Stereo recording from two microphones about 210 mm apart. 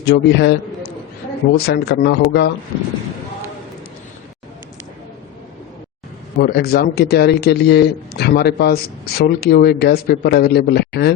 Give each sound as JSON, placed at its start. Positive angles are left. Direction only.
{"t": 0.0, "sound": "a man's voice", "side_deg": 55}
{"t": 1.5, "sound": "a man's voice", "side_deg": 50}
{"t": 6.4, "sound": "a man's voice", "side_deg": 45}